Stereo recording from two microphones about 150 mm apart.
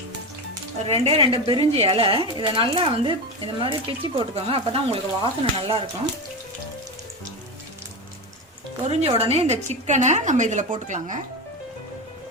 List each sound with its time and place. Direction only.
0.9 s speech: 40° right (ahead or behind)
9.1 s a woman's voice: 40° right (ahead or behind)